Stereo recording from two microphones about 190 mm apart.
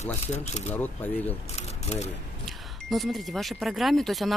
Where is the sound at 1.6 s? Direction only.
35° left (ahead or behind).